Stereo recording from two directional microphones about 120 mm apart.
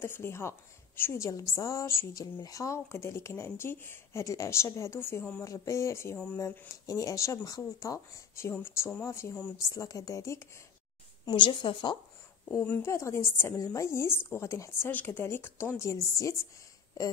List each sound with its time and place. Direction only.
0.0 s speech: 20° left (ahead or behind)
6.9 s speech: 30° left (ahead or behind)
11.2 s a woman's voice: 45° left (ahead or behind)
12.6 s speech: 20° left (ahead or behind)